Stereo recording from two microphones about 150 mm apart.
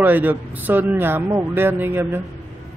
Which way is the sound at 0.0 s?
10° right (ahead or behind).